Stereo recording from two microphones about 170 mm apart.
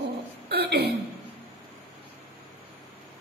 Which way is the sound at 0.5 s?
70° right (ahead or behind).